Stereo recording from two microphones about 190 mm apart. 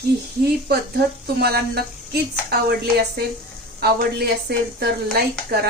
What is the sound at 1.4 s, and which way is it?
Speech, 55° right (ahead or behind).